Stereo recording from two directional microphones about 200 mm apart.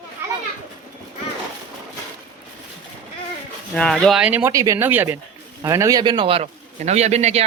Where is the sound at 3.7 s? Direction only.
5° left (ahead or behind); by 7.5 s 30° right (ahead or behind).